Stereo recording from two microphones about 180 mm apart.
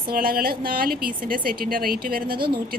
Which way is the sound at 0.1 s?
55° right (ahead or behind).